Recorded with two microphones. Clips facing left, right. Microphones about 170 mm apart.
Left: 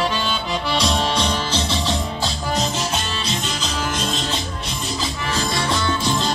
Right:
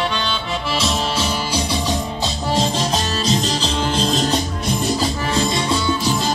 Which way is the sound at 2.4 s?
30° right (ahead or behind).